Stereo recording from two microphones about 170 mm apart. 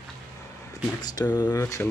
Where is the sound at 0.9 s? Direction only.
25° left (ahead or behind).